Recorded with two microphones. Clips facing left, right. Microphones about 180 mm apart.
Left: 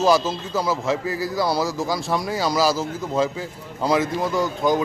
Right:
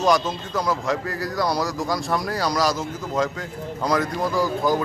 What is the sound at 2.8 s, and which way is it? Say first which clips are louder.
Speech: left 2 dB; 25° left (ahead or behind).